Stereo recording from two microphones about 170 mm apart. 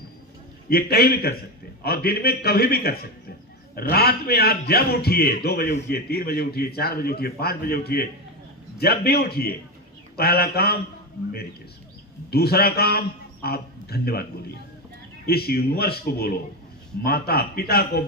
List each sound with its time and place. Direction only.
0.7 s a man's voice: 65° left (ahead or behind)
12.3 s a man's voice: 70° left (ahead or behind)
15.3 s a man's voice: 65° left (ahead or behind)